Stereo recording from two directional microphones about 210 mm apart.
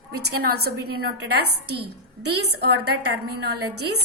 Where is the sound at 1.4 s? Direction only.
90° right.